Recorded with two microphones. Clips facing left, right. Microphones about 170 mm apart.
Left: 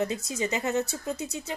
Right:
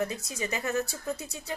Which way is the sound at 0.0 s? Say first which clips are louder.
Left 3 dB; 25° left (ahead or behind).